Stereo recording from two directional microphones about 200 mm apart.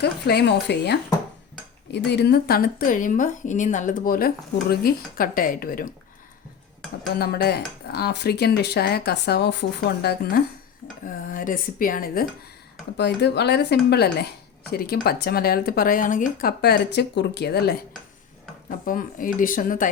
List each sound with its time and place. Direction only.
0.0 s speech: 55° left (ahead or behind)
2.0 s speech: 55° left (ahead or behind)
7.2 s speech: 50° left (ahead or behind)
11.0 s speech: 45° left (ahead or behind)
13.0 s speech: 60° left (ahead or behind)
18.9 s speech: 45° left (ahead or behind)